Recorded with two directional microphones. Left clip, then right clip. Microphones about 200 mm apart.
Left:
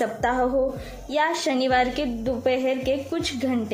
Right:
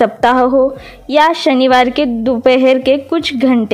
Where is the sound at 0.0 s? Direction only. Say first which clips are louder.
Right 13 dB; 50° right (ahead or behind).